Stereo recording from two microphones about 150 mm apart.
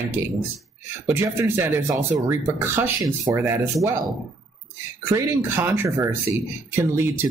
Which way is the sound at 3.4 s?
15° right (ahead or behind).